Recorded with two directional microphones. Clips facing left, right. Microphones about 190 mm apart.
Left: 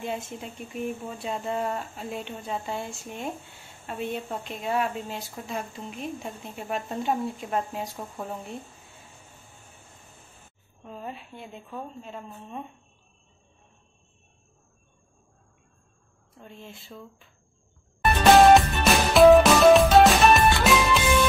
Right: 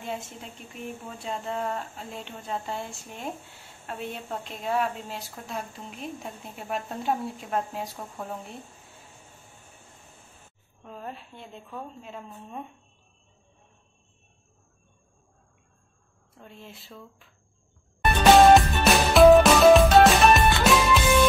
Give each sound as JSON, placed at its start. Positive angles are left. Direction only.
{"t": 1.2, "sound": "speech", "side_deg": 5}
{"t": 10.8, "sound": "speech", "side_deg": 0}
{"t": 16.3, "sound": "speech", "side_deg": 0}
{"t": 18.0, "sound": "music", "side_deg": 0}